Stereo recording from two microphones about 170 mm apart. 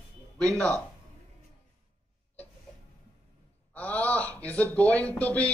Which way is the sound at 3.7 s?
10° left (ahead or behind).